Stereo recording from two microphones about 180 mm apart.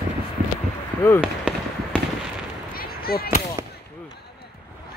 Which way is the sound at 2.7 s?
55° left (ahead or behind).